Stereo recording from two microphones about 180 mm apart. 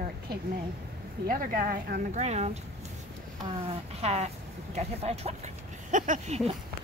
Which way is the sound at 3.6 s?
35° right (ahead or behind).